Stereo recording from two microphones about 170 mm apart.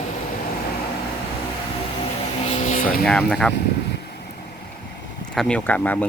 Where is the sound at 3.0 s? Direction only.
5° left (ahead or behind).